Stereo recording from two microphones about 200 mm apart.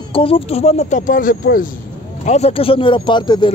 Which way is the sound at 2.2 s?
35° left (ahead or behind).